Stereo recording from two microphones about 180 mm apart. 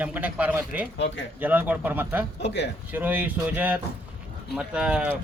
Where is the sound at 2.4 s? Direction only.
70° left (ahead or behind).